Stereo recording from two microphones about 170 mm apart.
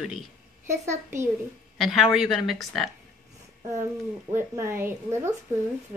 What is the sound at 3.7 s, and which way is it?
A woman's voice, 15° right (ahead or behind).